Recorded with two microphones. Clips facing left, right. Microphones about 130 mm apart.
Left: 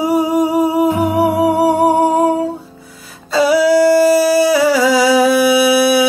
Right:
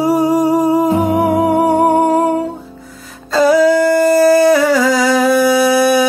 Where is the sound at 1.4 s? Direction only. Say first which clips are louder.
Even; 10° left (ahead or behind).